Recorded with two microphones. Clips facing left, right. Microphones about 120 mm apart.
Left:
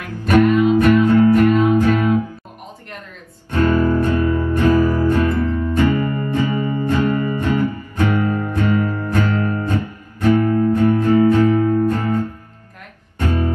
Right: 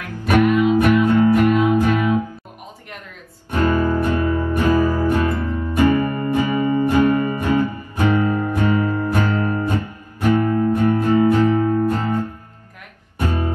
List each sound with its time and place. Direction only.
0.2 s music: 10° right (ahead or behind)
3.4 s music: 15° right (ahead or behind)
10.4 s music: 30° right (ahead or behind)
10.7 s music: 15° right (ahead or behind)
11.8 s guitar: 15° right (ahead or behind)
13.2 s music: 15° right (ahead or behind)